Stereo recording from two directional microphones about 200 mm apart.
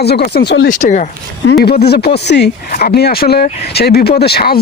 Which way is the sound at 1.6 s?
55° left (ahead or behind).